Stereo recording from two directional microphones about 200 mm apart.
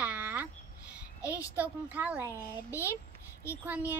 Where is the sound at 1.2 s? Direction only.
15° left (ahead or behind).